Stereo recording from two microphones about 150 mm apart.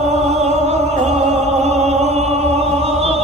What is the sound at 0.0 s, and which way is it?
Opera, 45° right (ahead or behind).